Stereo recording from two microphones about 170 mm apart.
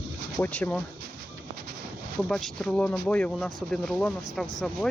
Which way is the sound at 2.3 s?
5° left (ahead or behind).